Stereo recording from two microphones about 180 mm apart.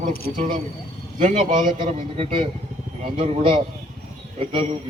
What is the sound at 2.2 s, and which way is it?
A man's voice, 30° right (ahead or behind).